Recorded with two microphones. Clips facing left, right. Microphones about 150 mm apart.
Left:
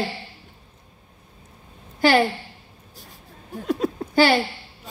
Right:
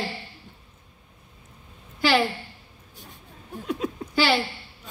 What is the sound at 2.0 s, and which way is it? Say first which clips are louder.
Speech: left 4 dB; 45° left (ahead or behind).